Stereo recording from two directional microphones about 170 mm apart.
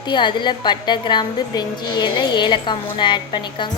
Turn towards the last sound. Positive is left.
turn(degrees=25)  # may be behind; listen again after turning